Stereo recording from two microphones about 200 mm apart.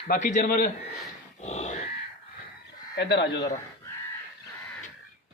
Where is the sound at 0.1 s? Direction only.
40° left (ahead or behind).